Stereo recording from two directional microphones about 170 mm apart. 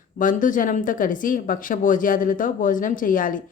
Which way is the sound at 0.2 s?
50° left (ahead or behind).